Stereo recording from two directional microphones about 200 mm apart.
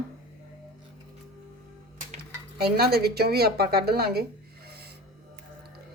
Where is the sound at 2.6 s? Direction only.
50° right (ahead or behind).